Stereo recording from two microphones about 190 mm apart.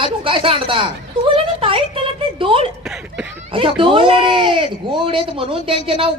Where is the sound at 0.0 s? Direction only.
30° right (ahead or behind).